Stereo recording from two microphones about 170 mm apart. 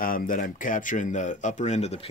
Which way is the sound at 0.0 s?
55° left (ahead or behind).